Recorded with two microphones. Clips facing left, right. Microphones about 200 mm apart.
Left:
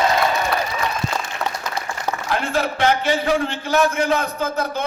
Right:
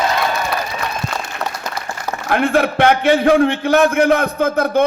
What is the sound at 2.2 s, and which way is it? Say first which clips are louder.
A man's voice: right 8 dB; 60° right (ahead or behind).